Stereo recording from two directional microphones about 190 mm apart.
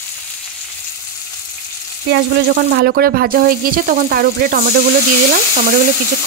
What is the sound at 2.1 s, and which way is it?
Speech, 60° right (ahead or behind).